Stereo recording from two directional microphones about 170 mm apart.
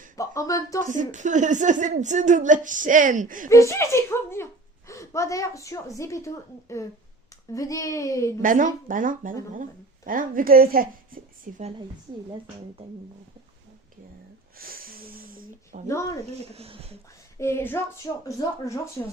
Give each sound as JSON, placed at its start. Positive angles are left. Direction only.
{"t": 0.2, "sound": "a child's voice", "side_deg": 20}
{"t": 0.9, "sound": "a woman's voice", "side_deg": -45}
{"t": 3.5, "sound": "a woman's voice", "side_deg": 15}
{"t": 8.4, "sound": "a woman's voice", "side_deg": -50}
{"t": 14.6, "sound": "wheeze", "side_deg": -60}
{"t": 15.9, "sound": "a woman's voice", "side_deg": 15}
{"t": 16.3, "sound": "speech", "side_deg": -40}
{"t": 17.3, "sound": "a woman's voice", "side_deg": 15}